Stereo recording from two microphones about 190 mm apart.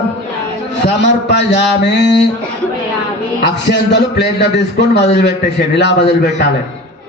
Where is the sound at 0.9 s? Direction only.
65° left (ahead or behind).